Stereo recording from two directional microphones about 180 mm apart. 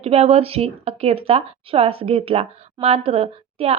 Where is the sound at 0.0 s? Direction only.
35° right (ahead or behind).